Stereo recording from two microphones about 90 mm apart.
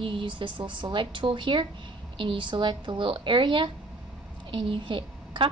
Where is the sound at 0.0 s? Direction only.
70° right (ahead or behind).